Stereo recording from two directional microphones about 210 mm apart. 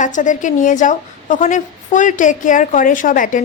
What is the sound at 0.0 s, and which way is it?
A woman's voice, 35° left (ahead or behind).